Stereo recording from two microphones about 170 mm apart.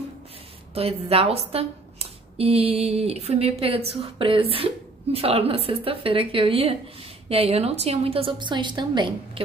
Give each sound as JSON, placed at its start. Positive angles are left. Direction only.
{"t": 0.7, "sound": "a woman's voice", "side_deg": -35}